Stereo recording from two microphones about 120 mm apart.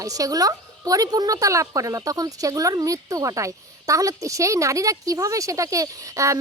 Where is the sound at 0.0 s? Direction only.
30° right (ahead or behind).